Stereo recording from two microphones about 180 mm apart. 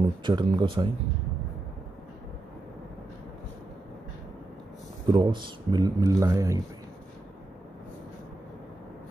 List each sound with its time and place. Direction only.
0.2 s speech: 25° right (ahead or behind)
5.0 s speech: 25° right (ahead or behind)